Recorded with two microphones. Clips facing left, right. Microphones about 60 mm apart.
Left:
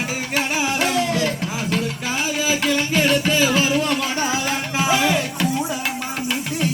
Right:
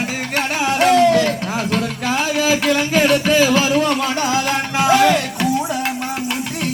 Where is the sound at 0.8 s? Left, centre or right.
Right.